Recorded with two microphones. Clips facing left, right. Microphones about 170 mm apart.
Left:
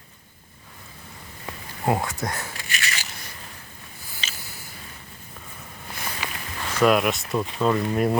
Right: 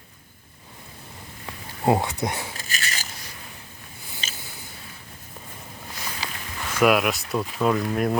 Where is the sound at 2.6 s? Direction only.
40° right (ahead or behind).